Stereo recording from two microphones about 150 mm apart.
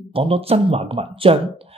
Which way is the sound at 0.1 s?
40° right (ahead or behind).